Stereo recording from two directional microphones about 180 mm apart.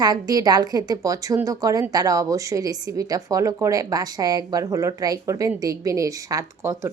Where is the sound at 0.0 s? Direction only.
20° right (ahead or behind).